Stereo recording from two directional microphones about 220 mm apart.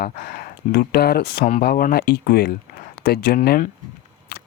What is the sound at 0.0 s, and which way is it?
Speech, 40° left (ahead or behind).